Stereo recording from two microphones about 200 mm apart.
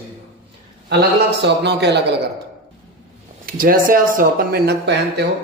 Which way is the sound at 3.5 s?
45° right (ahead or behind).